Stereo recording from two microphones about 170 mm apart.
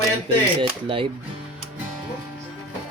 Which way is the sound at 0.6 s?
30° right (ahead or behind).